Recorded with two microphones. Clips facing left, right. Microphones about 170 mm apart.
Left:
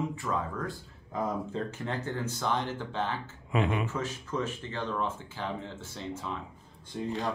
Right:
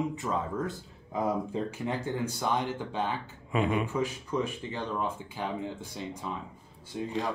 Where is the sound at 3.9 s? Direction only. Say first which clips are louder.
Right 3 dB; 15° right (ahead or behind).